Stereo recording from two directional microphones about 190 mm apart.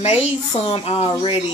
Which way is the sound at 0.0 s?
35° left (ahead or behind).